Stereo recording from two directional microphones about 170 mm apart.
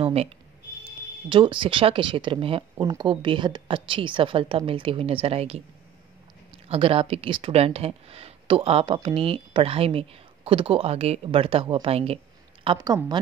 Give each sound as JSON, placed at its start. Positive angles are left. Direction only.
{"t": 0.0, "sound": "a sound", "side_deg": -35}
{"t": 1.3, "sound": "speech", "side_deg": -30}
{"t": 6.7, "sound": "speech", "side_deg": -35}
{"t": 12.6, "sound": "a woman's voice", "side_deg": -25}